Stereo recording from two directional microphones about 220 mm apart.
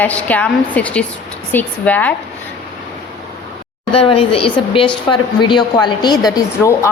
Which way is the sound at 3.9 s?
25° left (ahead or behind).